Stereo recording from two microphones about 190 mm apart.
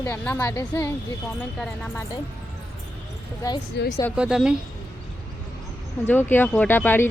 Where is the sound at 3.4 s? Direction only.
20° left (ahead or behind).